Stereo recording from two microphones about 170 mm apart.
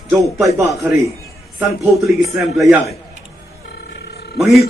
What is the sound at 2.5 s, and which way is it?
Speech, centre (ahead or behind).